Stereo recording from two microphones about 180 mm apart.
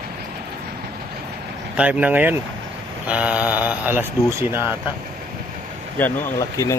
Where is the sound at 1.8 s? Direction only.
10° right (ahead or behind).